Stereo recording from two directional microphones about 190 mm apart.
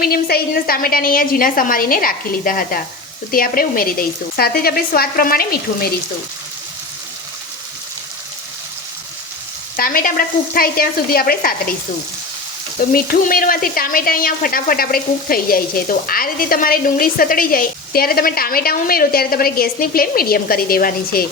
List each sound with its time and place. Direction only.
0.0 s speech: 55° left (ahead or behind)
9.7 s speech: 50° left (ahead or behind)
12.9 s speech: 50° left (ahead or behind)